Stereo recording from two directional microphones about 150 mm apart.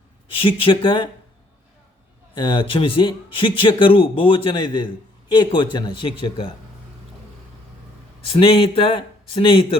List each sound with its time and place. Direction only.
0.3 s a man's voice: 35° left (ahead or behind)
2.3 s a man's voice: 30° left (ahead or behind)
8.3 s a man's voice: 40° left (ahead or behind)